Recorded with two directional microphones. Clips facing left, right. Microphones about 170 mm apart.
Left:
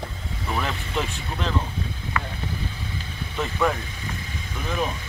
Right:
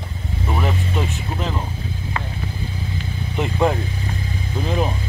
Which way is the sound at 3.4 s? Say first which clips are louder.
Right 4 dB; 30° right (ahead or behind).